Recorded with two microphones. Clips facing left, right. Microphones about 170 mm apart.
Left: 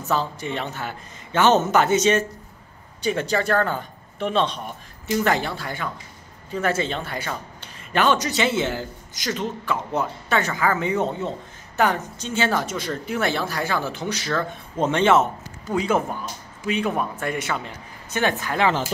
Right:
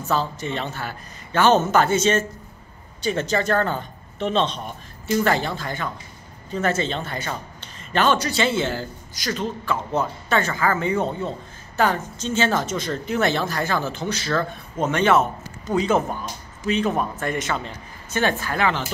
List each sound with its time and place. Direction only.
0.1 s a man's voice: 15° left (ahead or behind)
14.8 s a man's voice: 25° left (ahead or behind)
15.6 s a man's voice: 10° left (ahead or behind)